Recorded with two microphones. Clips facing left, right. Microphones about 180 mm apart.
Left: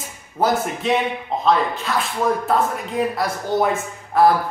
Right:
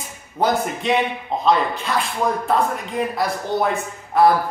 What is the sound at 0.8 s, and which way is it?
Speech, centre (ahead or behind).